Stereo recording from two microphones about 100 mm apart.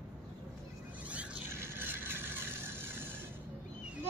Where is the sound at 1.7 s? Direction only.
20° right (ahead or behind).